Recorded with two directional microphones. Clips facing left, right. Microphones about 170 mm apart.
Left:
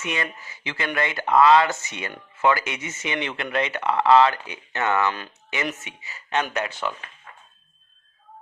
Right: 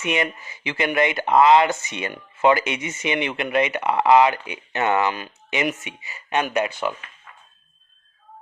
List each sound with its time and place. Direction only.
0.0 s speech: 20° right (ahead or behind)